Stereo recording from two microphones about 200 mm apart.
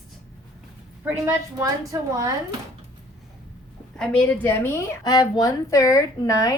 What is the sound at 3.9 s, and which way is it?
A woman's voice, 5° left (ahead or behind).